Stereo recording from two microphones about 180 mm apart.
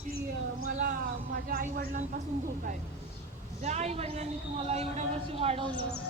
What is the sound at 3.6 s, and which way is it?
A woman's voice, 40° right (ahead or behind).